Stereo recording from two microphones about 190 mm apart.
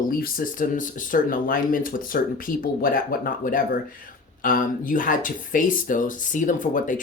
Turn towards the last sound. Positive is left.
turn(degrees=45)  # may be behind; listen again after turning